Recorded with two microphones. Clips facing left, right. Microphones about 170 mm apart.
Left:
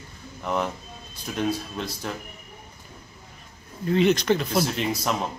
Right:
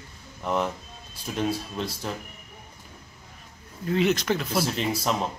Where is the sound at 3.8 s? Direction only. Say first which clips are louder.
Left 3 dB; 5° right (ahead or behind).